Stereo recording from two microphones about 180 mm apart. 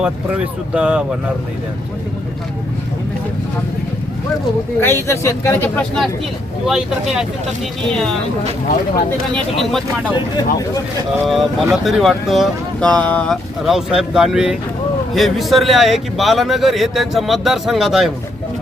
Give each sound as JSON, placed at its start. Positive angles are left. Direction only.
{"t": 0.0, "sound": "speech", "side_deg": -5}
{"t": 4.8, "sound": "speech", "side_deg": 10}
{"t": 9.3, "sound": "speech", "side_deg": 0}
{"t": 10.2, "sound": "speech", "side_deg": 20}
{"t": 11.3, "sound": "speech", "side_deg": 0}